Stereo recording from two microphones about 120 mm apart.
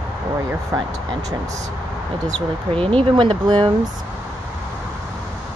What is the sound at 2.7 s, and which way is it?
Speech, 50° right (ahead or behind).